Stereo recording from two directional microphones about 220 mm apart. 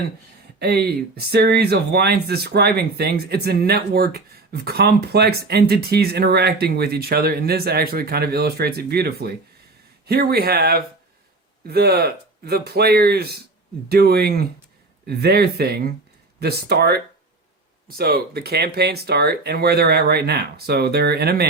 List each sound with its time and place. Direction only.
0.6 s speech: 45° right (ahead or behind)